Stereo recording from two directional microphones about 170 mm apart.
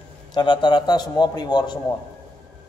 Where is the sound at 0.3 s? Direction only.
25° left (ahead or behind).